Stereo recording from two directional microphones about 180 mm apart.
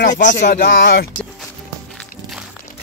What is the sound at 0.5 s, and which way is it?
Speech, 70° left (ahead or behind).